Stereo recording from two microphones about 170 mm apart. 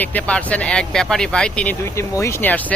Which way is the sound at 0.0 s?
10° left (ahead or behind).